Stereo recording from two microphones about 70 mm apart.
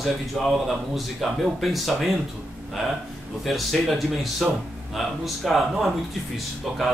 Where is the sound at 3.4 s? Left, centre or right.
Centre.